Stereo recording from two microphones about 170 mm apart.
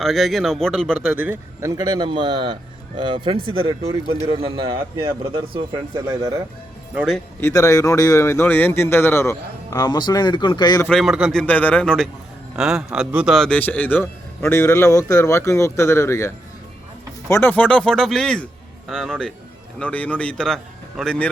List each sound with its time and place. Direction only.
0.0 s a man's voice: centre (ahead or behind)
1.7 s a man's voice: 25° right (ahead or behind)
4.8 s a man's voice: 15° right (ahead or behind)
6.9 s a man's voice: centre (ahead or behind)
7.4 s a man's voice: 15° left (ahead or behind)
10.8 s a man's voice: centre (ahead or behind)